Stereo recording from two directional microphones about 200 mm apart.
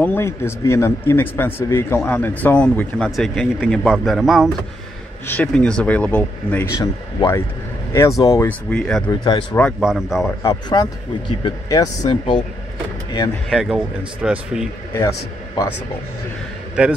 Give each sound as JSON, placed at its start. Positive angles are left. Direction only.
{"t": 0.0, "sound": "speech", "side_deg": 10}
{"t": 10.4, "sound": "speech", "side_deg": 15}
{"t": 13.5, "sound": "speech", "side_deg": 0}
{"t": 15.0, "sound": "a man's voice", "side_deg": 15}
{"t": 16.8, "sound": "speech", "side_deg": -5}